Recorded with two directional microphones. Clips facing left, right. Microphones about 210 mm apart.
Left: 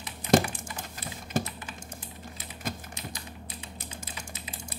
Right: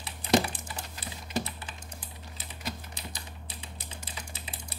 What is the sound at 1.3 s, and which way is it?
Typing, 50° left (ahead or behind).